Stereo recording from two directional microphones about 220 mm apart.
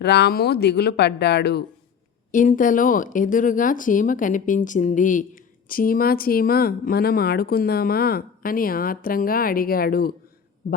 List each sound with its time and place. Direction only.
0.0 s speech: 50° left (ahead or behind)
2.3 s speech: 35° left (ahead or behind)